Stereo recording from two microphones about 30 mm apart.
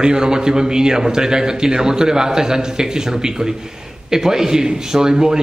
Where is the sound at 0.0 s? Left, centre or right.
Right.